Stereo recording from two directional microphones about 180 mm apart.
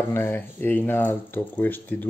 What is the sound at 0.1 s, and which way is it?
Speech, 15° left (ahead or behind).